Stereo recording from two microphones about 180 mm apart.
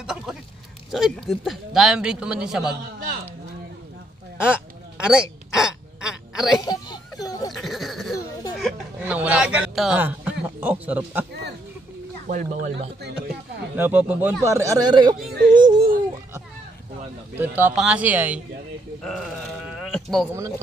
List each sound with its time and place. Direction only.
0.0 s a sound: 5° right (ahead or behind)
0.9 s a man's voice: centre (ahead or behind)
4.4 s a sound: 5° right (ahead or behind)
6.6 s a sound: 20° left (ahead or behind)
7.5 s a sound: centre (ahead or behind)
8.5 s speech: 5° right (ahead or behind)
12.3 s speech: 45° right (ahead or behind)
13.7 s speech: 10° right (ahead or behind)
15.3 s speech: 50° right (ahead or behind)
17.6 s speech: 5° right (ahead or behind)
19.0 s sheep: 5° right (ahead or behind)
20.3 s speech: 15° right (ahead or behind)